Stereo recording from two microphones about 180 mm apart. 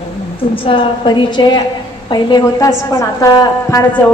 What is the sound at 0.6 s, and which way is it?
A woman's voice, 25° left (ahead or behind).